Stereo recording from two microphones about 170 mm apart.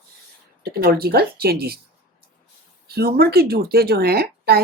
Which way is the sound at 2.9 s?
65° right (ahead or behind).